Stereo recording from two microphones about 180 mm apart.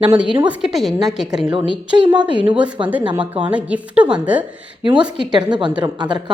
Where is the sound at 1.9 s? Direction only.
25° right (ahead or behind).